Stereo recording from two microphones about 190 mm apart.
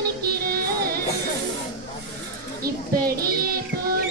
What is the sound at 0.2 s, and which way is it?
Music, 55° right (ahead or behind).